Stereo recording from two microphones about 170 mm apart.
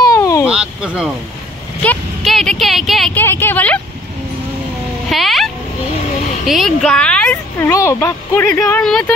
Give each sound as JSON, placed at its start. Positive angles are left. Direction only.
{"t": 0.1, "sound": "vehicle", "side_deg": 20}
{"t": 0.5, "sound": "a sound", "side_deg": -5}
{"t": 1.8, "sound": "speech", "side_deg": 5}
{"t": 3.2, "sound": "speech", "side_deg": 10}
{"t": 5.1, "sound": "vehicle", "side_deg": 0}
{"t": 6.4, "sound": "a child's voice", "side_deg": 0}
{"t": 7.7, "sound": "speech", "side_deg": 15}
{"t": 8.8, "sound": "speech", "side_deg": 5}